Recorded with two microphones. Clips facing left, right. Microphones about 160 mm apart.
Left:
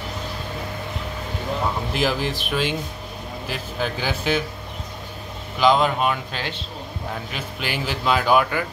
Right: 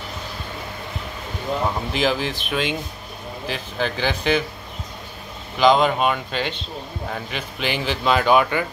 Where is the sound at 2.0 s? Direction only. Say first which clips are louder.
Right 1 dB; 5° left (ahead or behind).